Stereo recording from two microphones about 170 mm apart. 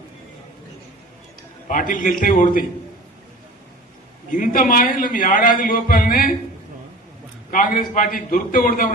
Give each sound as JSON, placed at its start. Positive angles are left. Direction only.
{"t": 1.6, "sound": "a man's voice", "side_deg": 50}
{"t": 4.3, "sound": "a man's voice", "side_deg": 50}
{"t": 7.5, "sound": "a man's voice", "side_deg": 50}